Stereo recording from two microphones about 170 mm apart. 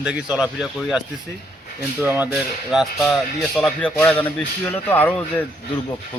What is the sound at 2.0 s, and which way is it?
Speech, 10° right (ahead or behind).